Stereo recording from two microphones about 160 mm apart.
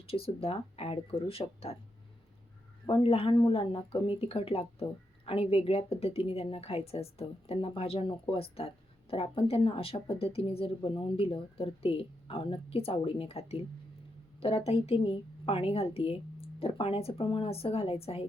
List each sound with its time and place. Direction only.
0.1 s speech: 35° left (ahead or behind)
2.8 s speech: 35° left (ahead or behind)